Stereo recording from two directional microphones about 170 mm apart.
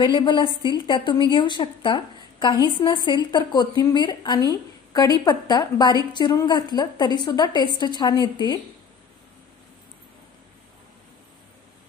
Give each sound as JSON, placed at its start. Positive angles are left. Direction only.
{"t": 0.0, "sound": "a woman's voice", "side_deg": 25}